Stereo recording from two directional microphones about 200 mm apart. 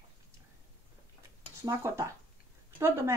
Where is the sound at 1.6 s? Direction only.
15° right (ahead or behind).